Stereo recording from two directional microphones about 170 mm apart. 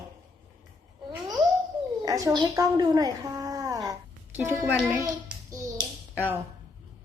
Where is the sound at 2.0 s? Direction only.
20° right (ahead or behind).